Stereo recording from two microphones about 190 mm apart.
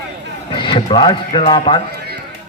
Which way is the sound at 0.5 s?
25° left (ahead or behind).